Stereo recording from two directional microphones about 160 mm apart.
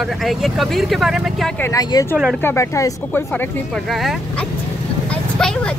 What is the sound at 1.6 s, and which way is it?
Speech, 20° left (ahead or behind).